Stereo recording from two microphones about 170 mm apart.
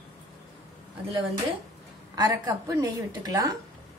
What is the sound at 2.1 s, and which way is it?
A woman's voice, 20° right (ahead or behind).